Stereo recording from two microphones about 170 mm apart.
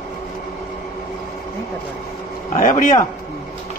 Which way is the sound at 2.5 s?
50° left (ahead or behind).